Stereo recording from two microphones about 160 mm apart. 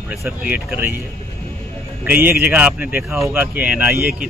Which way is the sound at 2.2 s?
10° right (ahead or behind).